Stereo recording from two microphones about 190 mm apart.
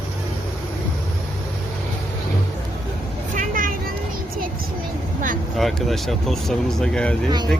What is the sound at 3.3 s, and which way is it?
Vehicle, 45° right (ahead or behind).